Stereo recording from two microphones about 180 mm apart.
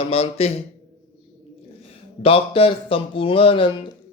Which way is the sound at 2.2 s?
30° left (ahead or behind).